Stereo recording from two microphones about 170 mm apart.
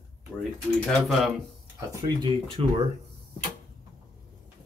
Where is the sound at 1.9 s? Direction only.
25° right (ahead or behind).